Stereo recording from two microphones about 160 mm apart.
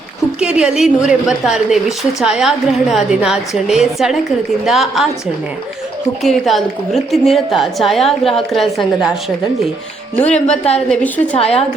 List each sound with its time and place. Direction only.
0.3 s a woman's voice: 5° right (ahead or behind)
6.2 s a woman's voice: centre (ahead or behind)
10.2 s a woman's voice: 45° left (ahead or behind)
10.8 s a woman's voice: 10° left (ahead or behind)
11.3 s a woman's voice: 40° left (ahead or behind)